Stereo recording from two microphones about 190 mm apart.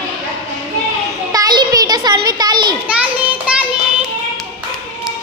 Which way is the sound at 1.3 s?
20° right (ahead or behind).